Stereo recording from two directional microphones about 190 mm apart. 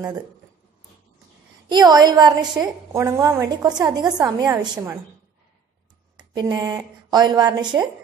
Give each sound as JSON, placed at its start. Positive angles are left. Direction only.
{"t": 1.7, "sound": "a woman's voice", "side_deg": -20}
{"t": 6.1, "sound": "a woman's voice", "side_deg": -20}